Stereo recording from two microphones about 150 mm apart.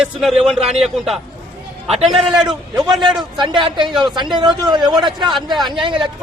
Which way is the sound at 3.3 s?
30° right (ahead or behind).